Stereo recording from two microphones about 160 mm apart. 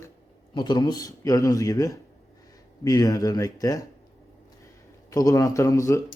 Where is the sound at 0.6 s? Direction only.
30° left (ahead or behind).